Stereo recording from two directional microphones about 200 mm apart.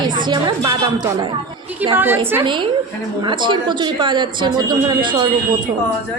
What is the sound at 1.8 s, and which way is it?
Speech, 10° right (ahead or behind).